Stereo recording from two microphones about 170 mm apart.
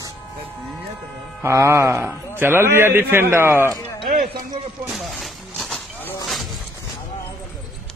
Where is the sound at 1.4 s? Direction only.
15° right (ahead or behind).